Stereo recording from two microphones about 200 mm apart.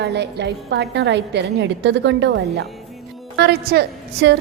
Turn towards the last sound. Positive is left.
turn(degrees=-55)  # may be behind; listen again after turning